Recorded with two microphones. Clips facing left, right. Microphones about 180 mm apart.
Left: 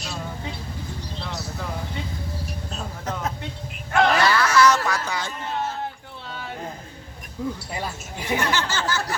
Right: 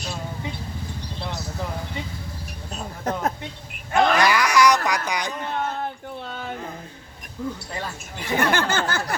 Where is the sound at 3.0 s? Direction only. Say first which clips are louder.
Right 5 dB; 55° right (ahead or behind).